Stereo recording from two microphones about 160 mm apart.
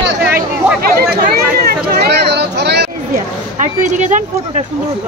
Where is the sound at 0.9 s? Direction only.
75° right (ahead or behind); by 2.9 s 90° right.